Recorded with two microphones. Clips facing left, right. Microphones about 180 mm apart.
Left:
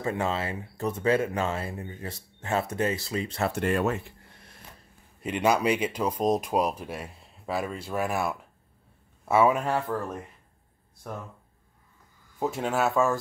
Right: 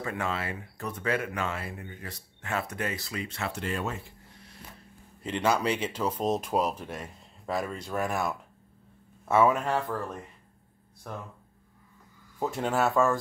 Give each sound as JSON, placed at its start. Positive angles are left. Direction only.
{"t": 0.0, "sound": "speech", "side_deg": 25}
{"t": 5.2, "sound": "speech", "side_deg": 15}
{"t": 12.4, "sound": "speech", "side_deg": 5}